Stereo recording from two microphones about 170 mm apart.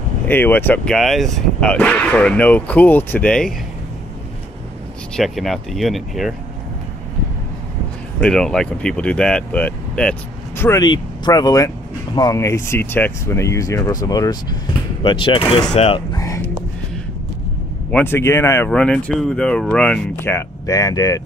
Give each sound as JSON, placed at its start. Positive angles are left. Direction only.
{"t": 0.3, "sound": "speech", "side_deg": 10}
{"t": 5.1, "sound": "speech", "side_deg": 0}
{"t": 8.2, "sound": "speech", "side_deg": 5}
{"t": 10.6, "sound": "speech", "side_deg": 20}
{"t": 16.1, "sound": "music", "side_deg": 20}
{"t": 17.9, "sound": "speech", "side_deg": 15}